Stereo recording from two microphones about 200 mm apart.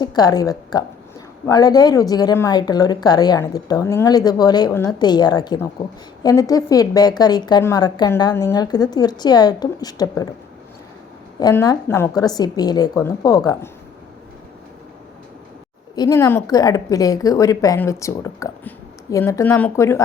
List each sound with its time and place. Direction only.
0.0 s a woman's voice: 20° left (ahead or behind)
11.3 s a woman's voice: 20° left (ahead or behind)
16.0 s a woman's voice: 15° left (ahead or behind)